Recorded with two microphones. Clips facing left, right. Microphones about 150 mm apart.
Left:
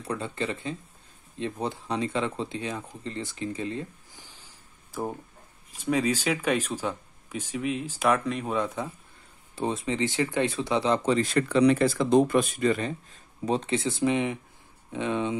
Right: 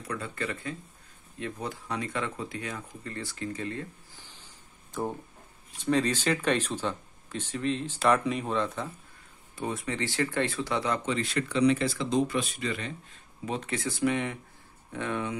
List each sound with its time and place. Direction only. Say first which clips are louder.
0.0 s speech: left 4 dB; 25° left (ahead or behind); by 8.2 s 10° left (ahead or behind)
8.3 s speech: even; centre (ahead or behind)
8.5 s speech: left 1 dB; 10° left (ahead or behind)
9.6 s speech: left 5 dB; 25° left (ahead or behind)
11.1 s speech: left 6 dB; 40° left (ahead or behind); by 15.3 s 20° left (ahead or behind)